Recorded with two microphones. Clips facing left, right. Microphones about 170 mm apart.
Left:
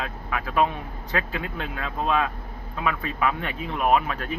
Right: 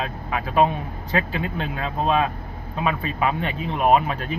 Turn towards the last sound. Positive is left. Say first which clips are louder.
# right 3 dB
turn(degrees=-25)  # may be behind; listen again after turning